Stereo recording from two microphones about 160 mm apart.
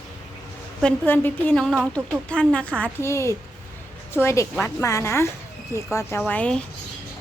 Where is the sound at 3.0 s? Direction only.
15° left (ahead or behind).